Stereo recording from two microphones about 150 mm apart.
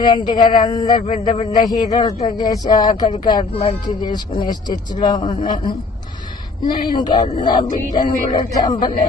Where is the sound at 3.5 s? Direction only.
40° left (ahead or behind).